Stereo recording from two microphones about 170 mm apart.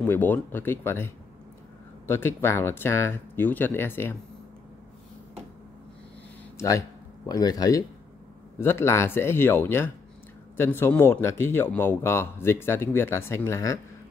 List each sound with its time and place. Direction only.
0.0 s speech: 10° left (ahead or behind)
7.2 s speech: 20° left (ahead or behind)